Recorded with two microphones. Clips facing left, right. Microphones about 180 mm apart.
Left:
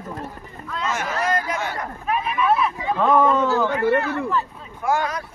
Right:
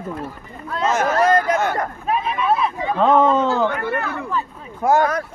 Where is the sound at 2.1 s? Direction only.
30° right (ahead or behind).